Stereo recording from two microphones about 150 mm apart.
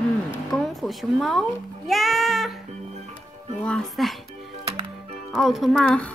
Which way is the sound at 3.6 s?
5° left (ahead or behind).